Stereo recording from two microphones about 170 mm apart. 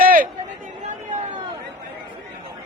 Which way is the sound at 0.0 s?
55° right (ahead or behind).